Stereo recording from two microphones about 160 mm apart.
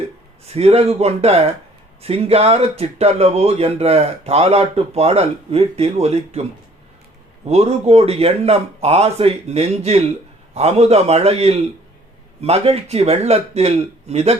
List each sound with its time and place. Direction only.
0.4 s speech: 40° right (ahead or behind)
7.4 s speech: 40° right (ahead or behind)